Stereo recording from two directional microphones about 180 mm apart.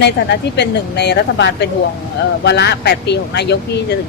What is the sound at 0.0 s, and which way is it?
Speech, 70° left (ahead or behind).